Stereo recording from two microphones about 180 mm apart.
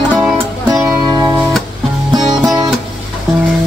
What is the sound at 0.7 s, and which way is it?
Music, 20° right (ahead or behind).